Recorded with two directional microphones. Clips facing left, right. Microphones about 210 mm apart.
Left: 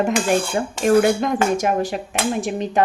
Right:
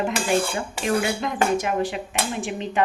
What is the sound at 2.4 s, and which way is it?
Dishes, 40° left (ahead or behind).